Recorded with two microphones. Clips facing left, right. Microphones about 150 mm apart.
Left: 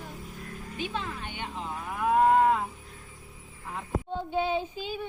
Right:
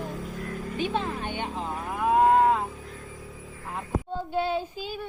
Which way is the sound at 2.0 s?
10° right (ahead or behind).